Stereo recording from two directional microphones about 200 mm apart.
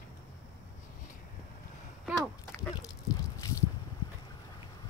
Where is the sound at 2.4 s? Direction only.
15° left (ahead or behind).